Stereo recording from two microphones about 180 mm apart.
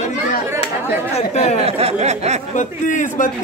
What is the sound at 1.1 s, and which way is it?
Speech, 40° left (ahead or behind).